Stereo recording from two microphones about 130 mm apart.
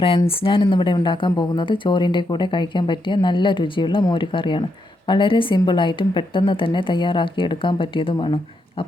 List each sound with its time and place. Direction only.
0.3 s speech: 40° left (ahead or behind)